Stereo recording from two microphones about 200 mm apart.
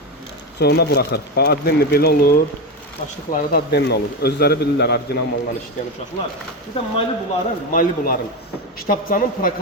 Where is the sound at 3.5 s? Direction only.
55° left (ahead or behind).